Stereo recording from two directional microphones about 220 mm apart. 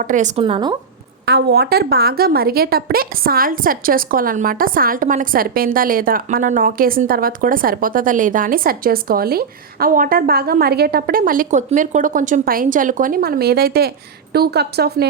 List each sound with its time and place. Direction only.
0.0 s a woman's voice: 35° right (ahead or behind)
1.2 s a woman's voice: 45° right (ahead or behind)